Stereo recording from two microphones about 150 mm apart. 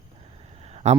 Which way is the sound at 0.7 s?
45° right (ahead or behind).